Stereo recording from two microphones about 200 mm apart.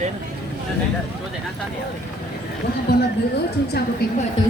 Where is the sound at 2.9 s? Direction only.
55° left (ahead or behind).